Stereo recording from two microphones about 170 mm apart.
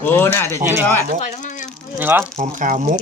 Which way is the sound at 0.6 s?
15° right (ahead or behind).